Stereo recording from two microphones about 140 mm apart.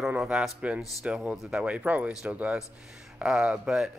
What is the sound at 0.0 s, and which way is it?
Speech, 5° right (ahead or behind).